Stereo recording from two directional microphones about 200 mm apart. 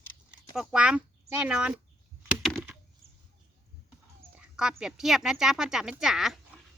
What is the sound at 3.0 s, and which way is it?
Bird, 30° right (ahead or behind).